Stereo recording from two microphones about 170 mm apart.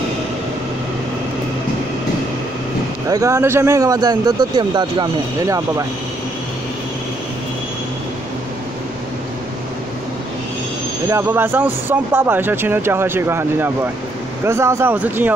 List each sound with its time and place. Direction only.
3.1 s speech: 20° right (ahead or behind)
11.1 s speech: 15° right (ahead or behind)